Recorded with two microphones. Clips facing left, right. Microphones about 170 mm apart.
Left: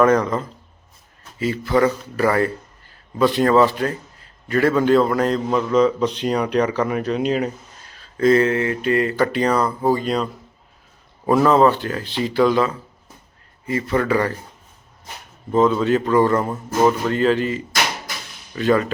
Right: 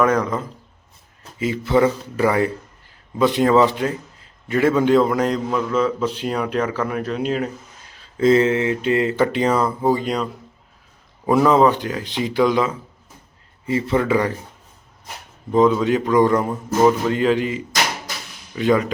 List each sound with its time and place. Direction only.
0.0 s speech: 10° right (ahead or behind)
1.4 s speech: 20° right (ahead or behind)
5.5 s speech: centre (ahead or behind)
8.2 s speech: 20° right (ahead or behind)
9.6 s speech: centre (ahead or behind)
9.9 s speech: 15° right (ahead or behind)
11.3 s speech: 15° right (ahead or behind)
15.5 s speech: 15° right (ahead or behind)
16.5 s speech: centre (ahead or behind)
17.1 s speech: 15° right (ahead or behind)